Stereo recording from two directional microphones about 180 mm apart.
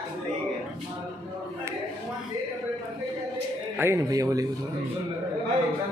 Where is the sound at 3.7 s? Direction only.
15° right (ahead or behind).